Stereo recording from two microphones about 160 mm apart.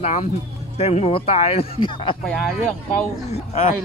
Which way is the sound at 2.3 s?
5° left (ahead or behind).